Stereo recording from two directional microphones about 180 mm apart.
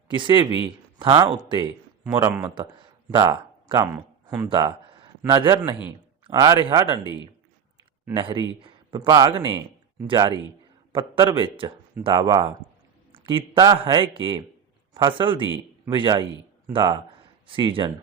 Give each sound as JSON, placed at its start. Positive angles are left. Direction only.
{"t": 0.1, "sound": "a man's voice", "side_deg": -25}
{"t": 3.2, "sound": "speech", "side_deg": -20}
{"t": 3.9, "sound": "a sound", "side_deg": -10}
{"t": 4.4, "sound": "a man's voice", "side_deg": -25}
{"t": 7.0, "sound": "speech", "side_deg": 25}
{"t": 8.1, "sound": "a man's voice", "side_deg": -30}